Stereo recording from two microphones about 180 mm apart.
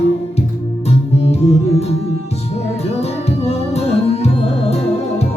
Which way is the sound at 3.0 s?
35° left (ahead or behind).